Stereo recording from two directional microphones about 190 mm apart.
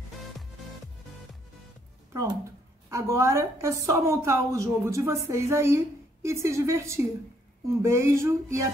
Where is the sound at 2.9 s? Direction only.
15° right (ahead or behind).